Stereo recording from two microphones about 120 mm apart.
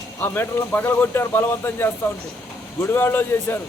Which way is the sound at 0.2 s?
15° left (ahead or behind).